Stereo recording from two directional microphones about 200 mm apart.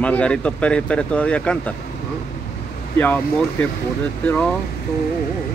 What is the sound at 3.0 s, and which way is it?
Speech, 10° left (ahead or behind).